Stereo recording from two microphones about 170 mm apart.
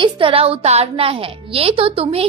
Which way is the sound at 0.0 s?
30° right (ahead or behind).